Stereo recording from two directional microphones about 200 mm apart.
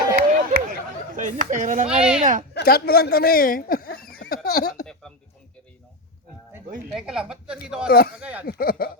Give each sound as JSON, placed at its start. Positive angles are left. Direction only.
{"t": 0.2, "sound": "chop", "side_deg": -45}
{"t": 1.9, "sound": "a woman's voice", "side_deg": -5}
{"t": 2.5, "sound": "a sound", "side_deg": 55}
{"t": 4.4, "sound": "speech", "side_deg": 50}
{"t": 6.9, "sound": "a woman's voice", "side_deg": -5}
{"t": 7.9, "sound": "speech", "side_deg": 50}
{"t": 8.2, "sound": "speech", "side_deg": -5}
{"t": 8.4, "sound": "speech", "side_deg": 50}